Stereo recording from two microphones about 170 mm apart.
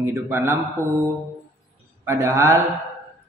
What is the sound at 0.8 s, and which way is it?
Speech, 10° left (ahead or behind).